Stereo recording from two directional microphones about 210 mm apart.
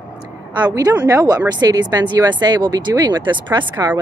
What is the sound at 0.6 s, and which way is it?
Speech, 20° right (ahead or behind).